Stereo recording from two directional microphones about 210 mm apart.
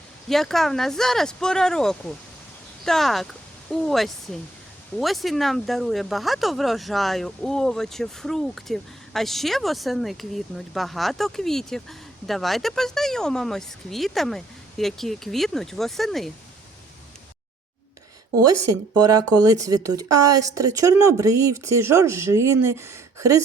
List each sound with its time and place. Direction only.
0.3 s speech: centre (ahead or behind)
18.3 s speech: 15° right (ahead or behind)